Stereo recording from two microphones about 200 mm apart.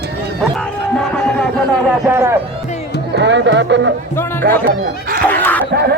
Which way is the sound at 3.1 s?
60° right (ahead or behind).